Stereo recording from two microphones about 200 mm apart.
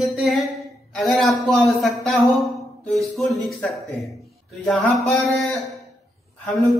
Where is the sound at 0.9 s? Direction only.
Centre (ahead or behind).